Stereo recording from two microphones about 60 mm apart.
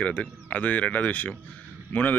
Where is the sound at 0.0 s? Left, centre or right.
Left.